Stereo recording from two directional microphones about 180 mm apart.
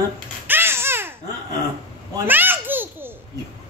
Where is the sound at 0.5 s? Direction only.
10° right (ahead or behind).